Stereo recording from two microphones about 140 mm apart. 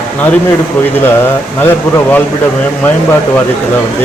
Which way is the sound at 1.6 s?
15° left (ahead or behind).